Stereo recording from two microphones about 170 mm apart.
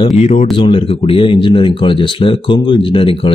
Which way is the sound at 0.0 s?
40° left (ahead or behind).